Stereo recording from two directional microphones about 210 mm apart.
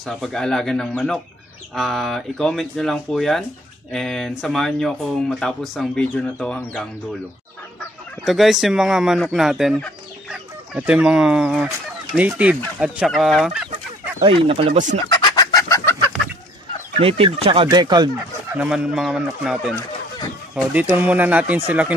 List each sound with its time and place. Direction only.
0.0 s speech: centre (ahead or behind)
8.2 s speech: centre (ahead or behind)
14.2 s speech: 25° right (ahead or behind)
15.2 s chicken: 20° left (ahead or behind)
16.9 s speech: 25° right (ahead or behind)
18.6 s speech: 5° right (ahead or behind)